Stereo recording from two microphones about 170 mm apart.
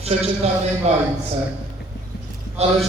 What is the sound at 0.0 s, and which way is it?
Speech, 40° right (ahead or behind).